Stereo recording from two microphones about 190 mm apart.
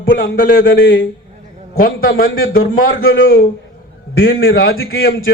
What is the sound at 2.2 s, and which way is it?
Speech, 90° left.